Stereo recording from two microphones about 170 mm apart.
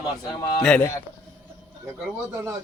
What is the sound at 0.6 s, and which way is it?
Speech, 5° left (ahead or behind).